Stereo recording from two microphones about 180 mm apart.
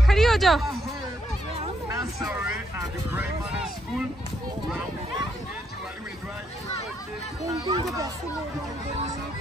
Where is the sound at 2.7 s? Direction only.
10° right (ahead or behind).